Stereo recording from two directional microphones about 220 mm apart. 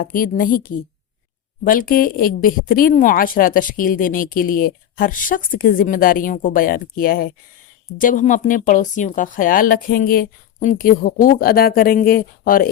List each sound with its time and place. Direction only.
0.0 s a woman's voice: 40° left (ahead or behind)